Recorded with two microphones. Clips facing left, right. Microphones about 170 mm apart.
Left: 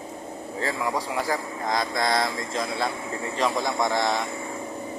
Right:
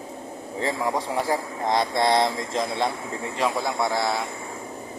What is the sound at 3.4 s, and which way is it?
Speech, 10° right (ahead or behind).